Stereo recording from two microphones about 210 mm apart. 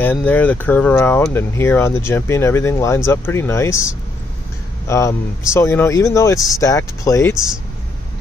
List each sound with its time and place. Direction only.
0.0 s speech: 10° left (ahead or behind)